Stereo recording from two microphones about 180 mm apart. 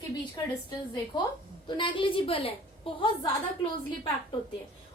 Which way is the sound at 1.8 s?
30° left (ahead or behind).